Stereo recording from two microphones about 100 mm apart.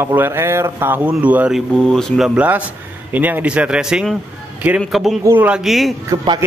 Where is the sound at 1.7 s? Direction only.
5° left (ahead or behind).